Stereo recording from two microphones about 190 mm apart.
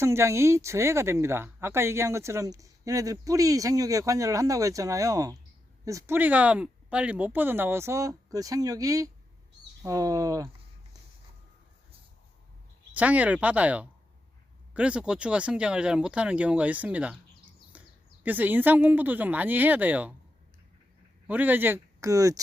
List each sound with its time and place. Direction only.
0.0 s speech: 15° right (ahead or behind)
12.9 s speech: 10° right (ahead or behind)
21.2 s speech: 10° right (ahead or behind)